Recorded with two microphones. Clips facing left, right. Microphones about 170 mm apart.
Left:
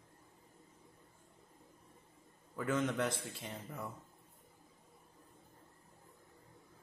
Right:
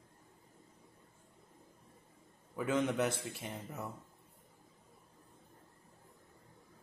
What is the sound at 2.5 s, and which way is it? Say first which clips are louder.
Speech: right 2 dB; 15° right (ahead or behind).